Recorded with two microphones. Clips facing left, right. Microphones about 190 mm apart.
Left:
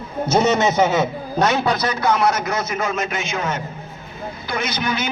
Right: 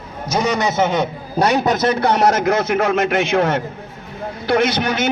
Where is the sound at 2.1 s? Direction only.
65° right (ahead or behind).